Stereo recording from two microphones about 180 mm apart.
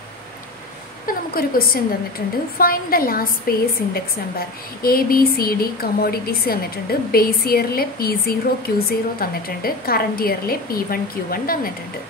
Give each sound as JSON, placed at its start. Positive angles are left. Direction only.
{"t": 1.0, "sound": "a woman's voice", "side_deg": 55}